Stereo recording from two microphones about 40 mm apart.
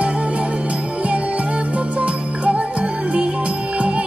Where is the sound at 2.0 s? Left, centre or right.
Right.